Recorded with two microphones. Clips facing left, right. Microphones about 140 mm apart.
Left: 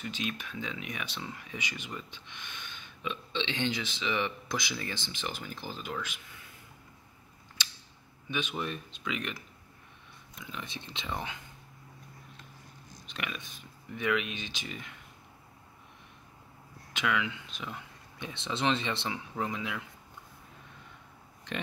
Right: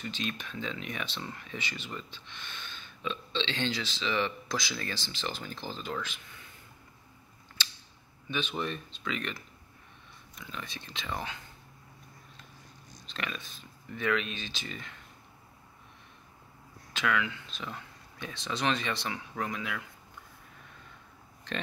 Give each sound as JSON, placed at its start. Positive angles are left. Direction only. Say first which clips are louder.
{"t": 0.0, "sound": "speech", "louder": "even", "side_deg": 10}
{"t": 7.6, "sound": "a sound", "louder": "right 1 dB", "side_deg": 15}
{"t": 8.3, "sound": "speech", "louder": "right 1 dB", "side_deg": 10}
{"t": 10.4, "sound": "speech", "louder": "left 1 dB", "side_deg": 20}
{"t": 13.0, "sound": "speech", "louder": "right 1 dB", "side_deg": 15}
{"t": 16.9, "sound": "speech", "louder": "right 1 dB", "side_deg": 15}